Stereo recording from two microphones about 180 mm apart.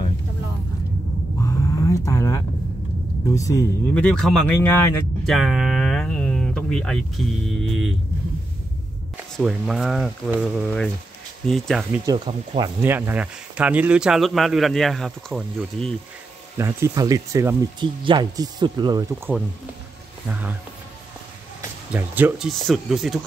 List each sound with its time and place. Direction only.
1.4 s a sound: 15° left (ahead or behind)
3.3 s speech: 20° left (ahead or behind)
3.9 s speech: 5° left (ahead or behind)
9.1 s speech: 5° right (ahead or behind)
12.3 s speech: 25° right (ahead or behind)
12.8 s speech: 10° right (ahead or behind)
16.5 s speech: 15° right (ahead or behind)
21.5 s music: 10° right (ahead or behind)
22.5 s speech: centre (ahead or behind)